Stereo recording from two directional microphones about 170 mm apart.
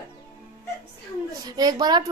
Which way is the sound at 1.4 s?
25° right (ahead or behind).